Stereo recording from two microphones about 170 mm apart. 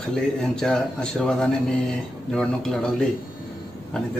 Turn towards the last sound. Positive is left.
turn(degrees=5)  # may be behind; listen again after turning